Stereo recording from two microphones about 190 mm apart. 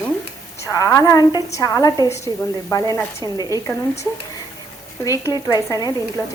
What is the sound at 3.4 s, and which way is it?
Speech, 20° right (ahead or behind).